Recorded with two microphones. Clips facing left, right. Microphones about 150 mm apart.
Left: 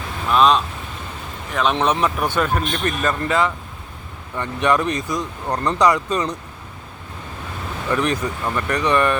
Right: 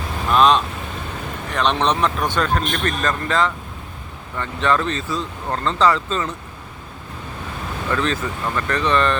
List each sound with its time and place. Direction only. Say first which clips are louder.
0.3 s speech: even; centre (ahead or behind); by 6.3 s 15° left (ahead or behind)
7.9 s speech: left 2 dB; 15° left (ahead or behind)